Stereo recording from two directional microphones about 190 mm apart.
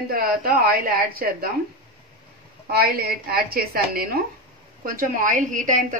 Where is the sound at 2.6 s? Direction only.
55° right (ahead or behind).